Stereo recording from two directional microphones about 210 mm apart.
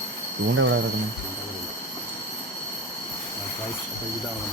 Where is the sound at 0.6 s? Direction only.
60° right (ahead or behind).